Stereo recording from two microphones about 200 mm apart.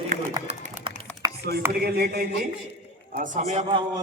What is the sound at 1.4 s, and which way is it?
Speech, 50° right (ahead or behind).